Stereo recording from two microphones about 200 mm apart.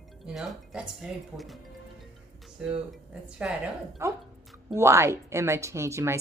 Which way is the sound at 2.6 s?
5° right (ahead or behind).